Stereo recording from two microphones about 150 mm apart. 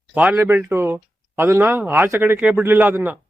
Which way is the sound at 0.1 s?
5° right (ahead or behind).